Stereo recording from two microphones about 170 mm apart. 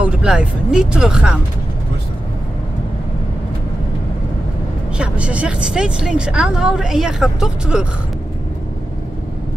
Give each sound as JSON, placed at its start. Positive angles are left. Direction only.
{"t": 0.0, "sound": "speech", "side_deg": -5}
{"t": 4.9, "sound": "a woman's voice", "side_deg": -5}